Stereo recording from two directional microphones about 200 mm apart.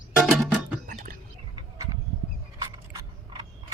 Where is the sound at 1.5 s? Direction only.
20° right (ahead or behind).